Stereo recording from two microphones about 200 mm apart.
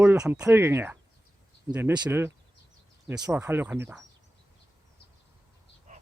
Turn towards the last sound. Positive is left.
turn(degrees=-40)  # may be behind; listen again after turning